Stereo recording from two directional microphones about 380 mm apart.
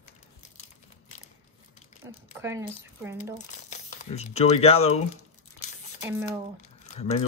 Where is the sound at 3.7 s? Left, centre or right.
Centre.